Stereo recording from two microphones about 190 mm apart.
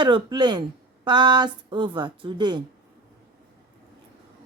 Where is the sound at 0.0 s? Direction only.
25° right (ahead or behind).